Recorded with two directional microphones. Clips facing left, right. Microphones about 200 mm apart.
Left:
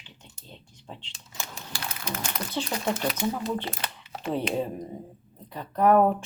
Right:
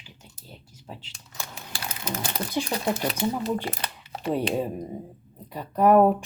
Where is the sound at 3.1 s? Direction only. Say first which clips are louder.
Right 2 dB; 30° right (ahead or behind).